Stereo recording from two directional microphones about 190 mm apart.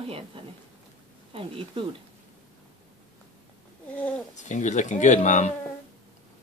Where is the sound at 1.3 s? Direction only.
30° right (ahead or behind).